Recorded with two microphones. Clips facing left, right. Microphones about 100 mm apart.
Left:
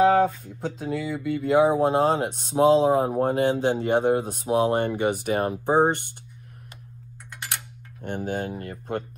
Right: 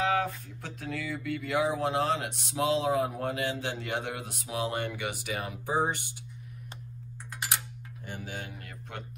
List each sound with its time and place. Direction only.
0.0 s a sound: 25° left (ahead or behind)
0.6 s speech: 25° left (ahead or behind); by 6.1 s 60° left (ahead or behind)
8.2 s speech: 40° left (ahead or behind)